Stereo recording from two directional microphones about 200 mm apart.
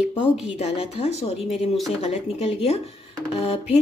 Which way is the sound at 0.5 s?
30° left (ahead or behind).